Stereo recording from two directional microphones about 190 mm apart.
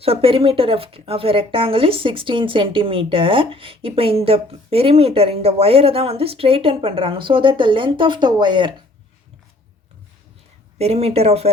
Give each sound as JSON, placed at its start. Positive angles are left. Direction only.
{"t": 0.0, "sound": "speech", "side_deg": -30}
{"t": 10.8, "sound": "speech", "side_deg": -35}